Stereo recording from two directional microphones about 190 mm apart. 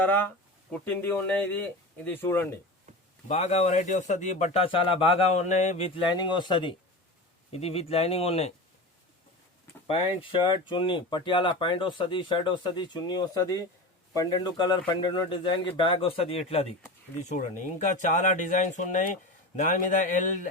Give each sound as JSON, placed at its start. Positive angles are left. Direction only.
{"t": 0.7, "sound": "speech", "side_deg": 10}
{"t": 3.2, "sound": "speech", "side_deg": 35}
{"t": 6.1, "sound": "speech", "side_deg": 25}
{"t": 10.4, "sound": "speech", "side_deg": 25}